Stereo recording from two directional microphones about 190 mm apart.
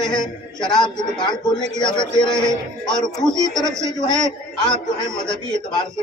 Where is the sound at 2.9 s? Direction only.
5° left (ahead or behind).